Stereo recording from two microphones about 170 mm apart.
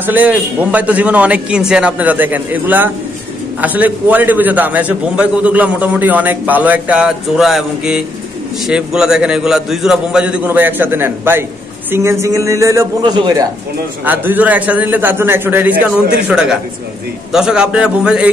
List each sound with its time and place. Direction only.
0.0 s a man's voice: 10° right (ahead or behind)
14.0 s a man's voice: 10° right (ahead or behind)